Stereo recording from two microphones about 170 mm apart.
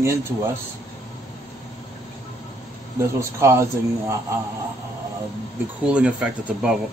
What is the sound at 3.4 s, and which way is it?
Speech, 15° right (ahead or behind).